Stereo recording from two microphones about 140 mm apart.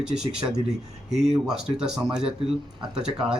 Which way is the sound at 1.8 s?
5° right (ahead or behind).